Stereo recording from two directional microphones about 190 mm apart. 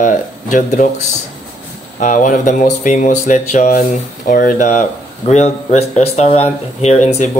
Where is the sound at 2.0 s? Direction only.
40° left (ahead or behind).